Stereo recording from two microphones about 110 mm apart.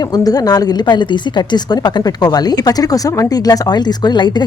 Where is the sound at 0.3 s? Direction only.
35° left (ahead or behind).